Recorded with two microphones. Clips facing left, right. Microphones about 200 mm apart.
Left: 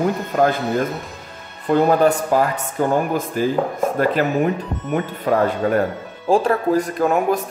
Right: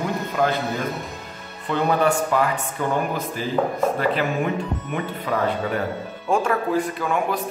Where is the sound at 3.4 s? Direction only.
50° left (ahead or behind).